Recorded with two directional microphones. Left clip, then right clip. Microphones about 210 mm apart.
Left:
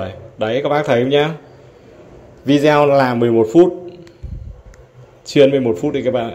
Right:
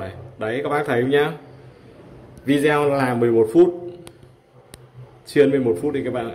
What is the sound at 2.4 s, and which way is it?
Speech, 15° left (ahead or behind).